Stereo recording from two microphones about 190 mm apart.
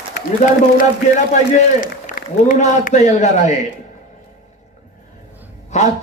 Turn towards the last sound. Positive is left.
turn(degrees=35)  # may be behind; listen again after turning